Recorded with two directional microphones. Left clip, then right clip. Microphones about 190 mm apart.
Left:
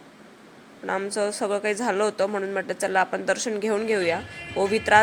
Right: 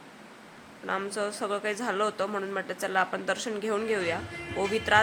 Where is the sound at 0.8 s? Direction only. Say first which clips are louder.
Left 5 dB; 20° left (ahead or behind).